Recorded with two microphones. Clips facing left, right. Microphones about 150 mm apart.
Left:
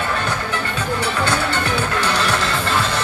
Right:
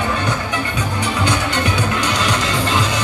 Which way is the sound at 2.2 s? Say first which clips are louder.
Right 1 dB; 15° right (ahead or behind).